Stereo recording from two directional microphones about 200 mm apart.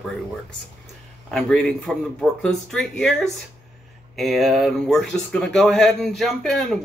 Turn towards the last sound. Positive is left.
turn(degrees=0)  # may be behind; listen again after turning